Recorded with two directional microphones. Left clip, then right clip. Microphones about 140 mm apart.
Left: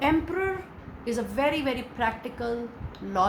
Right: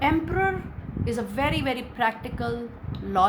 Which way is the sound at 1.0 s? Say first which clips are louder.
Left 1 dB; 50° right (ahead or behind).